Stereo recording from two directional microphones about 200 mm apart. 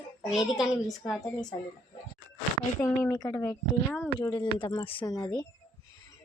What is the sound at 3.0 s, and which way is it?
Speech, 15° left (ahead or behind).